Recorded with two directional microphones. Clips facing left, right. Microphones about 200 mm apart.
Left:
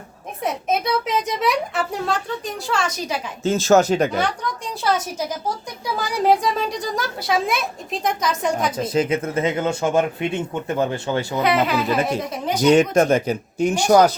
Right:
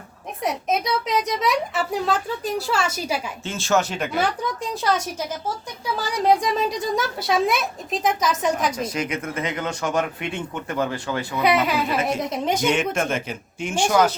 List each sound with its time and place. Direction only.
0.4 s a woman's voice: centre (ahead or behind)
3.4 s speech: 40° left (ahead or behind)
4.2 s a woman's voice: centre (ahead or behind)
6.2 s a woman's voice: centre (ahead or behind)
8.8 s speech: 25° left (ahead or behind)
12.2 s speech: 20° right (ahead or behind)
12.6 s speech: 35° left (ahead or behind)